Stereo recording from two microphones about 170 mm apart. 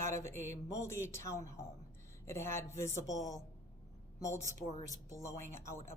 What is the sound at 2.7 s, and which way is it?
Speech, 45° right (ahead or behind).